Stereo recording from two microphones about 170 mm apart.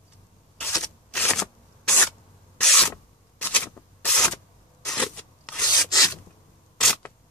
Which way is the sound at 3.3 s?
10° left (ahead or behind).